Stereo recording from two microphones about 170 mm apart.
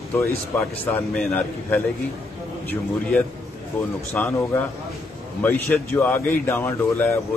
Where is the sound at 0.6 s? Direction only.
10° left (ahead or behind).